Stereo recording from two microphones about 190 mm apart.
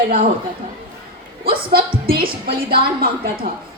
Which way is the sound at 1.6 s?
50° right (ahead or behind).